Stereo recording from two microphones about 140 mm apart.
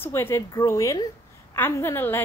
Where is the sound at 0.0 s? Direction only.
15° left (ahead or behind).